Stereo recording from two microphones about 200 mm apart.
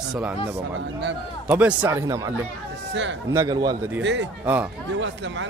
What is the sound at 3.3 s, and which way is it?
Speech, 20° right (ahead or behind).